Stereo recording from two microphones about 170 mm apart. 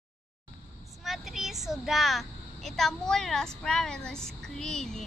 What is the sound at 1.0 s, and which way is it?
Speech, centre (ahead or behind).